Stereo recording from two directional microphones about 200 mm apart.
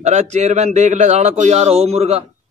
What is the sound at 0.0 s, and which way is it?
A man's voice, 35° right (ahead or behind).